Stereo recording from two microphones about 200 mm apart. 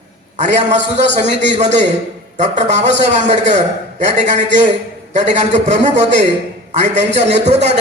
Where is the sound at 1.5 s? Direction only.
35° right (ahead or behind).